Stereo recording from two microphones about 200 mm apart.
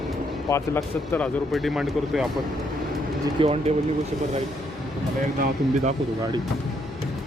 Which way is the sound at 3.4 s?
30° right (ahead or behind).